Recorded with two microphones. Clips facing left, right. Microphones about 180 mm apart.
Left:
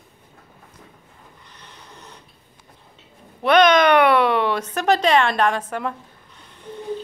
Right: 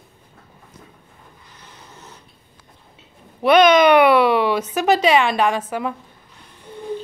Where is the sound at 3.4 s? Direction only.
5° right (ahead or behind).